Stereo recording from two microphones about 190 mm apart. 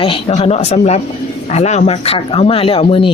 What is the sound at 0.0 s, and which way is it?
A woman's voice, 30° left (ahead or behind).